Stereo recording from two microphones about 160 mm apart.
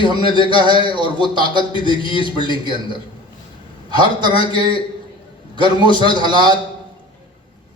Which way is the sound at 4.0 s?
30° right (ahead or behind).